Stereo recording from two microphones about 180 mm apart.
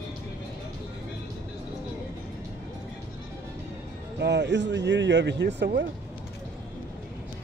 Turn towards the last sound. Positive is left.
turn(degrees=-75)  # may be behind; listen again after turning